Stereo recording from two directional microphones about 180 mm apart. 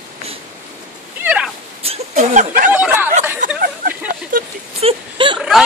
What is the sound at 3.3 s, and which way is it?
Chatter, 45° right (ahead or behind).